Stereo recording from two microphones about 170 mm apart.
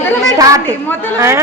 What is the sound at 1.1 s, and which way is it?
Speech, 15° right (ahead or behind).